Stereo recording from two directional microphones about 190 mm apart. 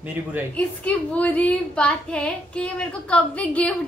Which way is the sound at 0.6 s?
5° left (ahead or behind).